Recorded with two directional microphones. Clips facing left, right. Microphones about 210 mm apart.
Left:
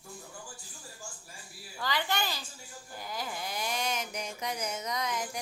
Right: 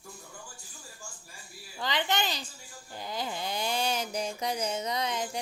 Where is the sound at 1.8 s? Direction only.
20° right (ahead or behind).